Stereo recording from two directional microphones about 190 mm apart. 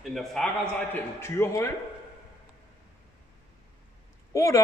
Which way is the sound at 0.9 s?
15° left (ahead or behind).